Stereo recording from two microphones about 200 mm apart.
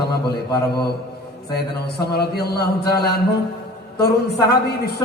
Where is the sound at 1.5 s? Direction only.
55° left (ahead or behind).